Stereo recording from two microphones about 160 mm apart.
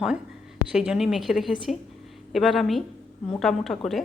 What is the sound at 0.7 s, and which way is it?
A woman's voice, 5° right (ahead or behind).